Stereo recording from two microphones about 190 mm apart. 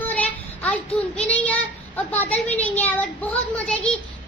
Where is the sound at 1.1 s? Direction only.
5° left (ahead or behind).